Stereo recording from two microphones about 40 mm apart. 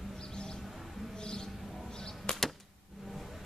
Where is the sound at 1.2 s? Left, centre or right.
Centre.